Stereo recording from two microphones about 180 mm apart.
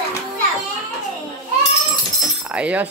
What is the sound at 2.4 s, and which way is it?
Speech, 5° right (ahead or behind).